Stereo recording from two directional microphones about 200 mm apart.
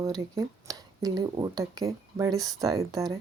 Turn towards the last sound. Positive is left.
turn(degrees=-15)  # may be behind; listen again after turning